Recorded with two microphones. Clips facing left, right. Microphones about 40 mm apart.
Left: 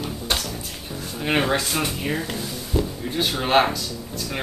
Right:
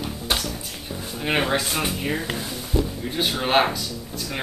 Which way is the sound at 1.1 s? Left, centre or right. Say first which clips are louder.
Left 1 dB; centre.